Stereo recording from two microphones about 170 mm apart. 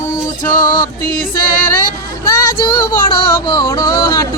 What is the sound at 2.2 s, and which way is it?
Music, 20° left (ahead or behind).